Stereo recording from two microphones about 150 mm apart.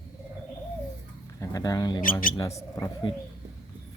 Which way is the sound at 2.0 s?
65° left (ahead or behind).